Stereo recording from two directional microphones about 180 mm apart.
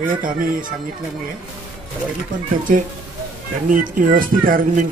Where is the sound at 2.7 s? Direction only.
50° right (ahead or behind).